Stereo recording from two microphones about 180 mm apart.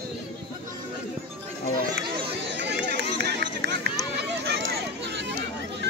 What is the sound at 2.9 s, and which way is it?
Run, 70° right (ahead or behind).